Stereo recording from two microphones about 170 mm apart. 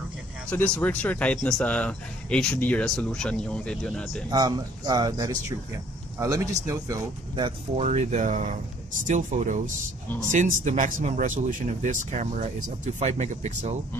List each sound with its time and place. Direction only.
0.5 s speech: 10° left (ahead or behind)
4.3 s speech: 25° right (ahead or behind)
7.7 s speech: 40° right (ahead or behind)